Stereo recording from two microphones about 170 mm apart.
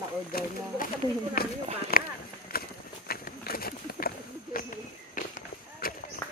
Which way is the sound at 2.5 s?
60° left (ahead or behind).